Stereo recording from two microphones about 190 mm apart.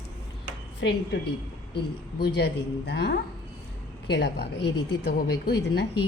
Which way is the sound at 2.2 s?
60° left (ahead or behind).